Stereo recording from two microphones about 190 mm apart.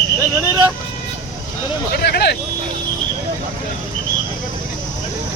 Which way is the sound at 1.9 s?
55° left (ahead or behind).